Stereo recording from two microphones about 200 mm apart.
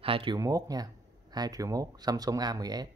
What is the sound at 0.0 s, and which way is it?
Speech, 25° right (ahead or behind).